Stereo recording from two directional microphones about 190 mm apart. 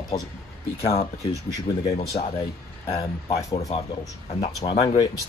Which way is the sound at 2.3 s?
25° left (ahead or behind).